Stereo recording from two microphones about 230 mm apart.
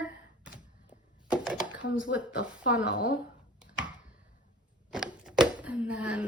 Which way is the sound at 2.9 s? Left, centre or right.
Left.